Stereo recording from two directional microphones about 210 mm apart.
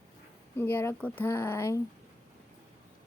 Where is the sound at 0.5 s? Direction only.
10° left (ahead or behind).